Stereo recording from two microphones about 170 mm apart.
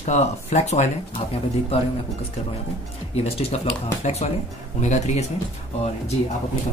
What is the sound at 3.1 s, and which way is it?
Speech, 40° left (ahead or behind).